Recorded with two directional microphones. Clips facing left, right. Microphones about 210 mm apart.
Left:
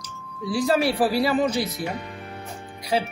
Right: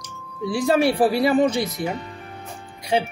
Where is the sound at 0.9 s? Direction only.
25° right (ahead or behind).